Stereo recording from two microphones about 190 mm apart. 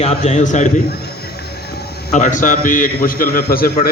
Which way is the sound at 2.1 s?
40° left (ahead or behind).